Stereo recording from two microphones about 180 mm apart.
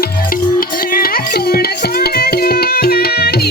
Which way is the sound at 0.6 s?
55° left (ahead or behind).